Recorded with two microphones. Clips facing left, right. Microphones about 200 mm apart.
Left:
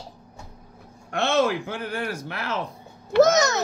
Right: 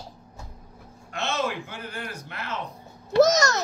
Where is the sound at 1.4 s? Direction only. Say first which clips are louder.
Left 5 dB; 75° left (ahead or behind).